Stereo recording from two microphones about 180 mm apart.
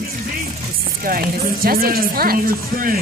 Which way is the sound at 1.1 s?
50° right (ahead or behind).